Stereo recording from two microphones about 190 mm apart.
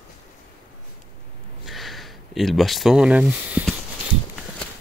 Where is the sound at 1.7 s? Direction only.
Centre (ahead or behind).